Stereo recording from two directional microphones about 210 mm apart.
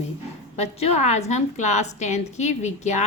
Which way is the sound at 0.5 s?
30° left (ahead or behind).